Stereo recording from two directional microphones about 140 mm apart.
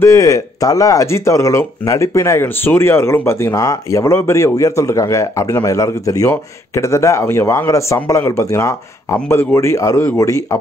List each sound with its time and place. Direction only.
0.0 s speech: 20° left (ahead or behind)